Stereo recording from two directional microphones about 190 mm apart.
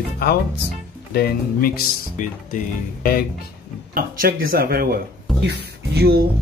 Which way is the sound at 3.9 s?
50° right (ahead or behind).